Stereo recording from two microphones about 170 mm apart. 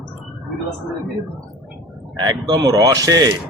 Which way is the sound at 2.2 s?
25° right (ahead or behind).